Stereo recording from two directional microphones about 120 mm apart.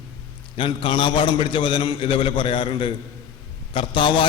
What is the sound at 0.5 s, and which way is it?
A man's voice, 45° left (ahead or behind).